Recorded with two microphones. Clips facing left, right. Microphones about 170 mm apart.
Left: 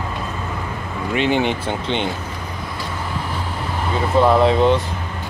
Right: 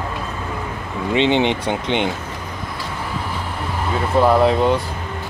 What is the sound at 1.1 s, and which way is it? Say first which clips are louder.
Speech: right 2 dB; 25° right (ahead or behind).